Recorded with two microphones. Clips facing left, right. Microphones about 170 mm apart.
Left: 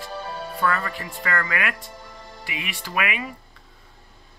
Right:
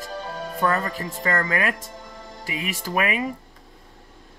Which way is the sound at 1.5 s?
35° right (ahead or behind).